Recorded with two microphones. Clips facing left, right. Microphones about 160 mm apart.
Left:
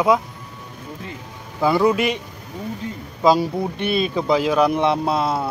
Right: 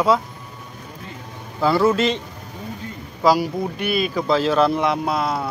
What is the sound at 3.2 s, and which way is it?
Speech, 25° left (ahead or behind).